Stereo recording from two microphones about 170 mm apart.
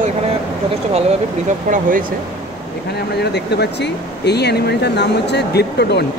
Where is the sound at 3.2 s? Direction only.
75° left (ahead or behind).